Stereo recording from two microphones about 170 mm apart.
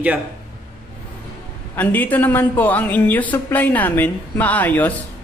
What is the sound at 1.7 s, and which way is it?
Speech, 10° left (ahead or behind).